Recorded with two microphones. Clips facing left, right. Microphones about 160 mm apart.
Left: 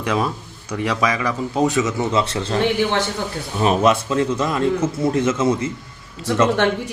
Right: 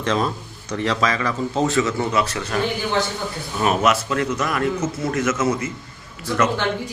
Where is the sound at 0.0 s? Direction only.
10° left (ahead or behind); by 5.7 s 30° left (ahead or behind).